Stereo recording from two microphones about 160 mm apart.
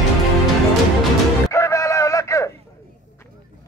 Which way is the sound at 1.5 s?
20° left (ahead or behind).